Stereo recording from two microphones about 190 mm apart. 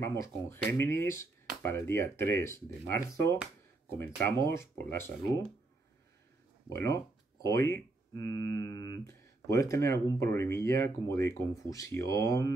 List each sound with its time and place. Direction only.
0.0 s speech: 15° left (ahead or behind)
6.7 s speech: 15° left (ahead or behind)